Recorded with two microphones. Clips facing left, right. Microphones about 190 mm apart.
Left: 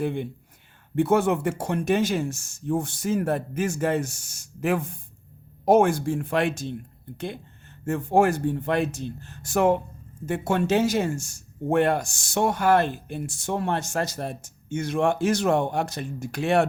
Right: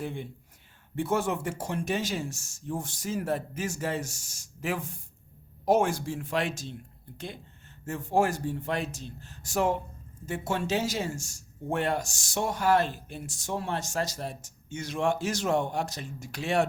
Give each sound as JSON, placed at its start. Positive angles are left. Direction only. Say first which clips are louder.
{"t": 0.0, "sound": "speech", "louder": "left 8 dB", "side_deg": 65}
{"t": 7.9, "sound": "speech", "louder": "left 6 dB", "side_deg": 60}